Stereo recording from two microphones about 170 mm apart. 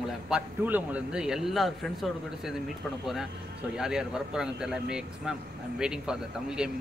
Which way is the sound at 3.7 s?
5° right (ahead or behind).